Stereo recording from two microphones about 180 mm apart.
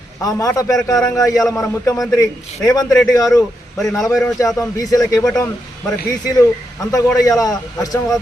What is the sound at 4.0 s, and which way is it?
Speech, centre (ahead or behind).